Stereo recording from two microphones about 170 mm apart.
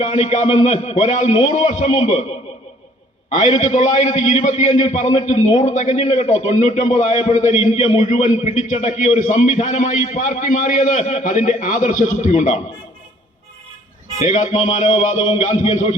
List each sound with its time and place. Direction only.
0.1 s a man's voice: 45° left (ahead or behind)
3.2 s a man's voice: 45° left (ahead or behind)
14.3 s a man's voice: 45° left (ahead or behind)